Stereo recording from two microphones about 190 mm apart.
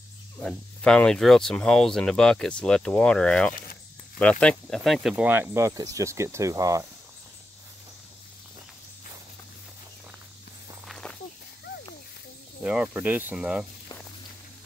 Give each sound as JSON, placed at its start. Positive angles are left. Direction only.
{"t": 0.4, "sound": "speech", "side_deg": 5}
{"t": 10.9, "sound": "walk", "side_deg": 5}
{"t": 12.6, "sound": "speech", "side_deg": -5}